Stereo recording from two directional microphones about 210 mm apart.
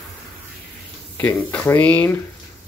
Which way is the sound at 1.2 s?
5° left (ahead or behind).